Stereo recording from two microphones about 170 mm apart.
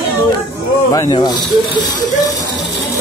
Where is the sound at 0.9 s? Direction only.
20° left (ahead or behind).